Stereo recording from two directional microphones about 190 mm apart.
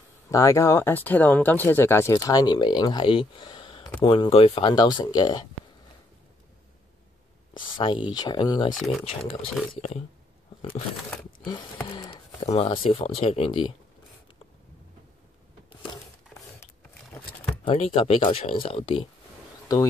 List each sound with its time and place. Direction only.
0.3 s speech: 15° left (ahead or behind)
7.7 s speech: 25° left (ahead or behind)
8.7 s speech: centre (ahead or behind)
9.3 s speech: 35° left (ahead or behind)
11.9 s speech: 25° left (ahead or behind)
17.6 s speech: 30° left (ahead or behind)